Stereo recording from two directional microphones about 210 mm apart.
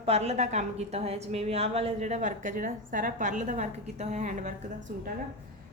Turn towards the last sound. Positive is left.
turn(degrees=-35)  # may be behind; listen again after turning